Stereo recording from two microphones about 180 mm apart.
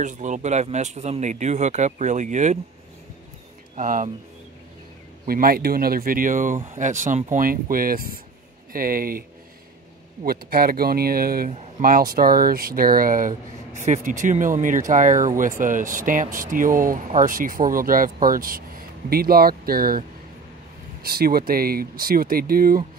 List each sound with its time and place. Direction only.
0.0 s a man's voice: 45° right (ahead or behind)
3.7 s speech: 45° right (ahead or behind)
5.2 s speech: 55° right (ahead or behind)
10.2 s speech: 55° right (ahead or behind)